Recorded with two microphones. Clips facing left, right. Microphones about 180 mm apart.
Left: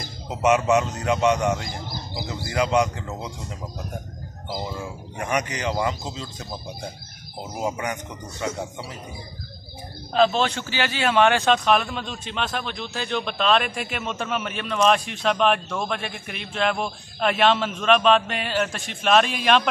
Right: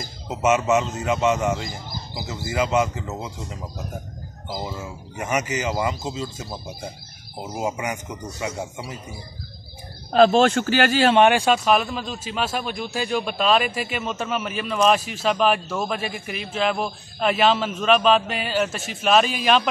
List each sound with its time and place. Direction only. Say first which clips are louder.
0.3 s speech: even; 5° right (ahead or behind)
4.6 s speech: left 1 dB; 5° right (ahead or behind)
7.5 s a man's voice: right 1 dB; 10° right (ahead or behind)
10.1 s a man's voice: right 5 dB; 45° right (ahead or behind)
11.1 s speech: left 2 dB; 15° right (ahead or behind)